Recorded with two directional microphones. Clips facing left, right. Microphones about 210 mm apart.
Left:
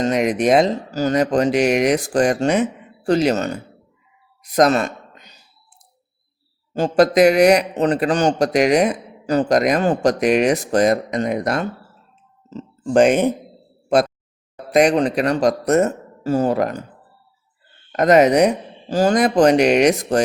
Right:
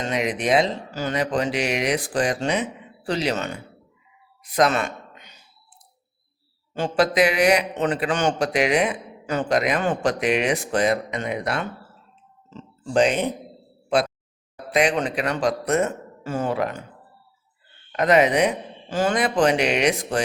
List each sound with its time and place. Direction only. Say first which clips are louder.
0.0 s speech: left 7 dB; 45° left (ahead or behind)
4.4 s gasp: left 5 dB; 40° left (ahead or behind)
6.7 s a man's voice: left 6 dB; 40° left (ahead or behind)
17.9 s speech: left 5 dB; 45° left (ahead or behind)